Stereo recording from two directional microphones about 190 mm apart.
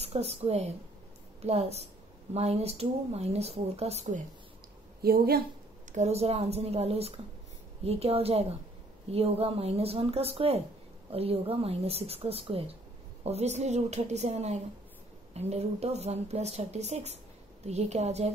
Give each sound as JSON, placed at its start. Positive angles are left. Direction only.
{"t": 0.0, "sound": "speech", "side_deg": -35}
{"t": 5.0, "sound": "a woman's voice", "side_deg": -55}
{"t": 5.9, "sound": "speech", "side_deg": -35}